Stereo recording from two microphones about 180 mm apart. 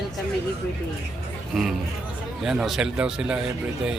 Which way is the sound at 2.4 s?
5° right (ahead or behind).